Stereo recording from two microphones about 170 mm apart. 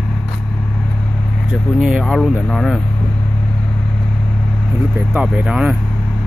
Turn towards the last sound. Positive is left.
turn(degrees=-5)  # may be behind; listen again after turning